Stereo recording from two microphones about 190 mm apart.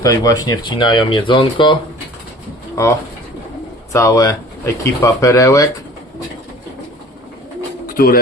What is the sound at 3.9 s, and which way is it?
Speech, 15° left (ahead or behind).